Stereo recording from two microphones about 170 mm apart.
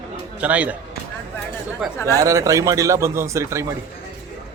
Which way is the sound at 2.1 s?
20° right (ahead or behind).